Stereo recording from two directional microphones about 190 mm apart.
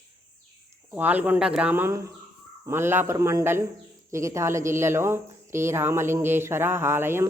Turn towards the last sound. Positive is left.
turn(degrees=-10)  # may be behind; listen again after turning